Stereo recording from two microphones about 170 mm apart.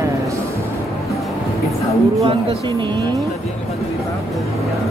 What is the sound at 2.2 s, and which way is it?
Speech, 30° right (ahead or behind).